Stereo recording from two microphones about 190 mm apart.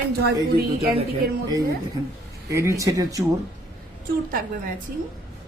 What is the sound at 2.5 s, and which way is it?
Speech, 15° right (ahead or behind).